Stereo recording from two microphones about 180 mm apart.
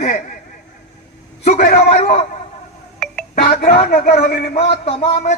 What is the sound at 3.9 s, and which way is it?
Speech, 55° left (ahead or behind).